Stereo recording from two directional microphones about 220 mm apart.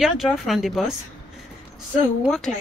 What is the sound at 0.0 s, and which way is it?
Speech, centre (ahead or behind).